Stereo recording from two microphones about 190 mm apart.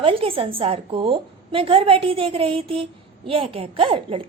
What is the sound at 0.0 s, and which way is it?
A woman's voice, 30° right (ahead or behind).